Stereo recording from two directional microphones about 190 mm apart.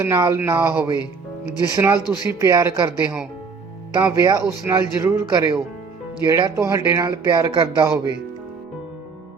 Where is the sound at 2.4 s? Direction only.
15° right (ahead or behind).